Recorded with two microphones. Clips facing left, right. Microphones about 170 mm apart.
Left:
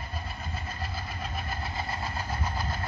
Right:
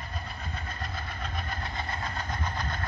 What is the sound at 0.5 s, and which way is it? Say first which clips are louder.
Vehicle: left 1 dB; 5° left (ahead or behind).